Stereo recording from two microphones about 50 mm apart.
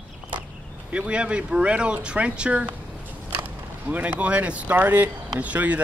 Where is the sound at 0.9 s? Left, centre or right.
Right.